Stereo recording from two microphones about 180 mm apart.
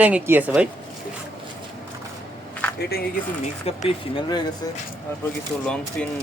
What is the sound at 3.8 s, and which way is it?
Speech, 30° left (ahead or behind).